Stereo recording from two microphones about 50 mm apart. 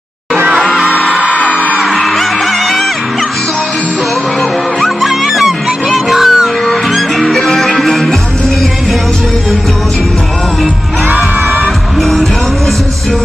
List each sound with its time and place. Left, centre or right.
0.7 s music: centre
1.3 s music: left
1.6 s music: right
1.9 s music: centre
4.8 s music: centre
11.1 s music: right